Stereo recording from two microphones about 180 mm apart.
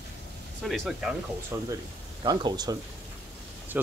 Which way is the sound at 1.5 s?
15° right (ahead or behind).